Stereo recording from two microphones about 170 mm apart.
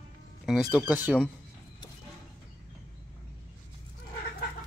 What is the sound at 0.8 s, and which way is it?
Speech, 10° right (ahead or behind).